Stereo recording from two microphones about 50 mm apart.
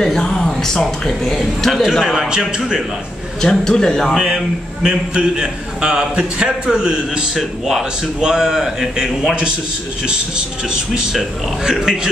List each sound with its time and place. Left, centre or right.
0.0 s speech: centre
1.8 s a man's voice: centre
3.3 s speech: centre
4.1 s a man's voice: centre
7.3 s a man's voice: centre
10.0 s a man's voice: centre